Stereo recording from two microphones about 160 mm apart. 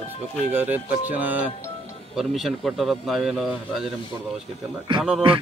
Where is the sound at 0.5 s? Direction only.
10° right (ahead or behind).